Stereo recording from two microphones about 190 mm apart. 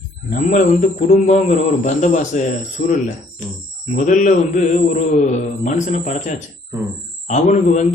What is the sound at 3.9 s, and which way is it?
A man's voice, 40° left (ahead or behind).